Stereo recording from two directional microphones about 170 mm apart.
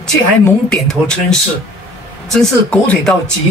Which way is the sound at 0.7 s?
5° left (ahead or behind).